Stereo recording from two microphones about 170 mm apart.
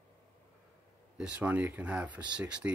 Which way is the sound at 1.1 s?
5° right (ahead or behind).